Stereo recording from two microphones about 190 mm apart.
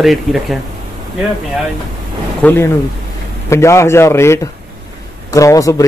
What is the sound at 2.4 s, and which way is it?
Speech, 10° left (ahead or behind).